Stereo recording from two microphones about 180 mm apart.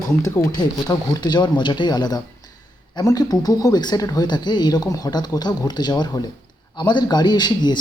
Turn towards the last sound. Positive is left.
turn(degrees=25)  # may be behind; listen again after turning